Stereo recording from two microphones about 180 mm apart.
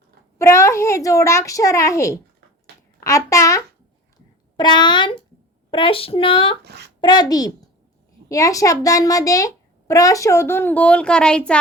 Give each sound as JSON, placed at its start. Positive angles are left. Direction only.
{"t": 0.3, "sound": "a child's voice", "side_deg": 15}
{"t": 6.7, "sound": "speech", "side_deg": -70}
{"t": 7.0, "sound": "a child's voice", "side_deg": 20}